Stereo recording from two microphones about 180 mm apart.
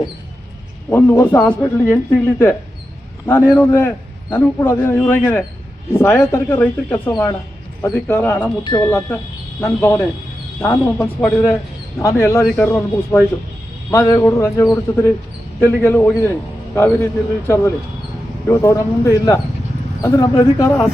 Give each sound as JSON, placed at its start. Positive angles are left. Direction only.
{"t": 0.9, "sound": "a man's voice", "side_deg": 10}
{"t": 3.2, "sound": "a man's voice", "side_deg": 10}
{"t": 8.6, "sound": "a man's voice", "side_deg": 20}
{"t": 10.9, "sound": "a man's voice", "side_deg": 5}